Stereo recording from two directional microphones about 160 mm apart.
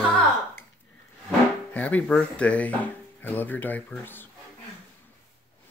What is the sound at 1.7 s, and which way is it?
Speech, 10° left (ahead or behind).